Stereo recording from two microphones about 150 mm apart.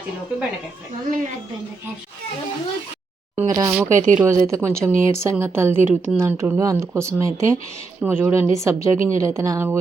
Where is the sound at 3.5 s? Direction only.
25° right (ahead or behind).